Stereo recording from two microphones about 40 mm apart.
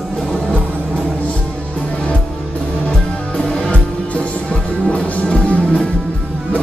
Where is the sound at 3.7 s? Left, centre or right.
Left.